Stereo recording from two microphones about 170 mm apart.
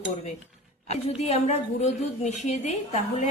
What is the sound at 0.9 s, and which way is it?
A woman's voice, 40° left (ahead or behind).